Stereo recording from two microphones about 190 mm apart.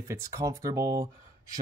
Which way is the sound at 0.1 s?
15° right (ahead or behind).